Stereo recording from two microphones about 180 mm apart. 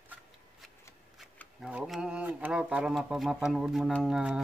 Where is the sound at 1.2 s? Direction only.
Centre (ahead or behind).